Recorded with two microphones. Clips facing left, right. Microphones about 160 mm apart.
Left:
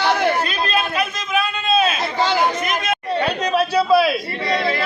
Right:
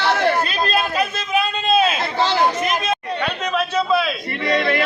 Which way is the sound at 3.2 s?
35° left (ahead or behind).